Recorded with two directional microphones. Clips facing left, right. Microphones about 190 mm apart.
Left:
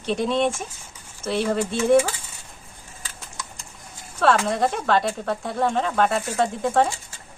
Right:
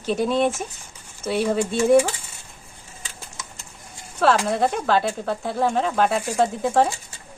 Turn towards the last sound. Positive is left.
turn(degrees=-5)  # may be behind; listen again after turning